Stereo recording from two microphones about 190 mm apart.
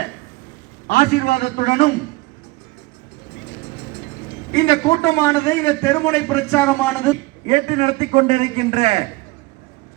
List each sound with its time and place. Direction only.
0.9 s a man's voice: 50° left (ahead or behind)
1.6 s a man's voice: 35° left (ahead or behind)
4.5 s a man's voice: 20° left (ahead or behind)
7.4 s a man's voice: 35° right (ahead or behind)